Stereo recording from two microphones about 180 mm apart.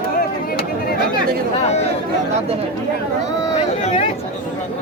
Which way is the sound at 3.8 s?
35° left (ahead or behind).